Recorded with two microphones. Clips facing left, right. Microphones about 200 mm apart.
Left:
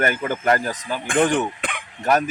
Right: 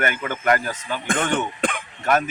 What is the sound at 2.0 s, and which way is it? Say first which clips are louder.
Speech: left 1 dB; 35° left (ahead or behind).